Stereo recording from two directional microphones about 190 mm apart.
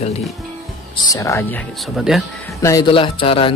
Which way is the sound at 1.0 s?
15° left (ahead or behind).